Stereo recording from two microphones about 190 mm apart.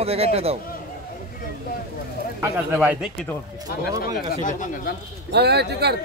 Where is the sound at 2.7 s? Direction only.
5° right (ahead or behind).